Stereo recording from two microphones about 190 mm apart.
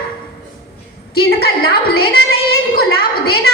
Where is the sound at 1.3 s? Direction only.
50° left (ahead or behind).